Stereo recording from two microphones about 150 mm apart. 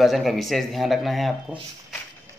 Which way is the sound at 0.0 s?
Centre (ahead or behind).